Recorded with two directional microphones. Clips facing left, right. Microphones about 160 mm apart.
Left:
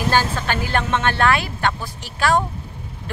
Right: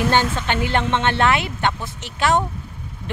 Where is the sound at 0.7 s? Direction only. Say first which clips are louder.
Right 1 dB; 25° right (ahead or behind).